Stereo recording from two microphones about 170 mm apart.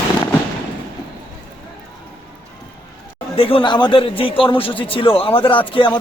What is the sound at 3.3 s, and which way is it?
Speech, 35° left (ahead or behind).